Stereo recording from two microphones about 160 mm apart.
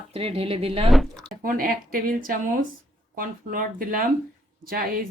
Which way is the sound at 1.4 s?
60° right (ahead or behind).